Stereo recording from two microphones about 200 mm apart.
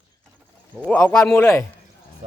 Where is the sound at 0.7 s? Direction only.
5° left (ahead or behind).